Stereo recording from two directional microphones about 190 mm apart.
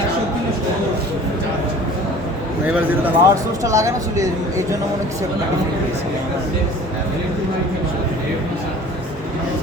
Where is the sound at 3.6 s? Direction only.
15° right (ahead or behind).